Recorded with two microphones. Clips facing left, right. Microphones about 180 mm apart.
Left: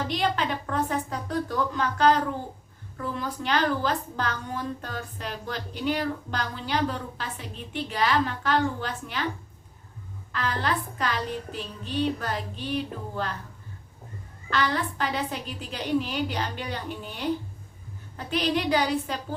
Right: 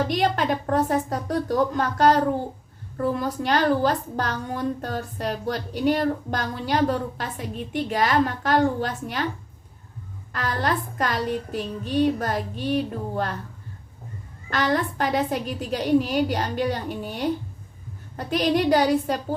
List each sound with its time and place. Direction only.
0.1 s a woman's voice: 45° right (ahead or behind)
10.3 s a woman's voice: 40° right (ahead or behind)
14.5 s a woman's voice: 45° right (ahead or behind)